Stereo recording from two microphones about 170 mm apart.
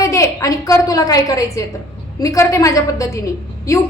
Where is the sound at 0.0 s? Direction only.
20° left (ahead or behind).